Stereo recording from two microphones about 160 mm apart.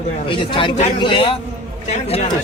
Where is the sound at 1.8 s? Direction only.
45° left (ahead or behind).